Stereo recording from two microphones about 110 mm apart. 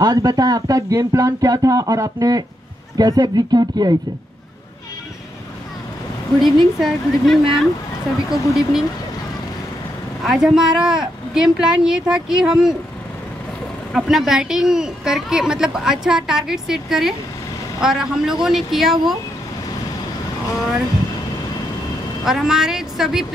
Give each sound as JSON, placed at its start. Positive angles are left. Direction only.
{"t": 0.0, "sound": "speech", "side_deg": -35}
{"t": 6.4, "sound": "a woman's voice", "side_deg": 0}
{"t": 10.2, "sound": "a woman's voice", "side_deg": -5}
{"t": 13.9, "sound": "a woman's voice", "side_deg": -5}
{"t": 22.2, "sound": "a woman's voice", "side_deg": -5}